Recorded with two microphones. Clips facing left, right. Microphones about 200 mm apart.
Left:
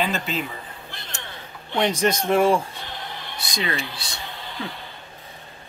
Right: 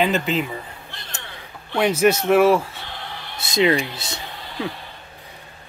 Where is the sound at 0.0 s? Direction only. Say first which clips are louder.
Right 5 dB; 15° right (ahead or behind).